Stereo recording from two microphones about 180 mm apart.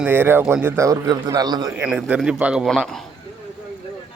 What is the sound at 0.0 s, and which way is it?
A man's voice, 10° right (ahead or behind).